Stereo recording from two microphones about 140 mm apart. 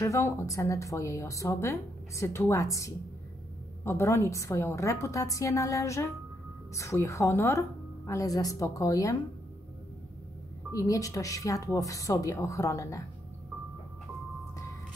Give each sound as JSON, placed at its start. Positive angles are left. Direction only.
{"t": 0.0, "sound": "speech", "side_deg": 20}
{"t": 10.7, "sound": "speech", "side_deg": 25}